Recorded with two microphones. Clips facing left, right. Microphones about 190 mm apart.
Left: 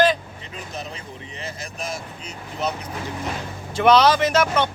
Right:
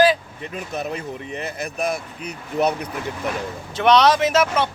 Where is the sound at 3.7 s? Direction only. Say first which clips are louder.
Even; centre (ahead or behind).